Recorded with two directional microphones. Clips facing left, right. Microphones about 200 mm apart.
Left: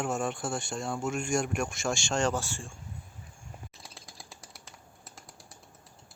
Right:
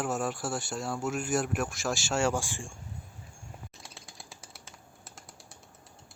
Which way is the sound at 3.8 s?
Centre (ahead or behind).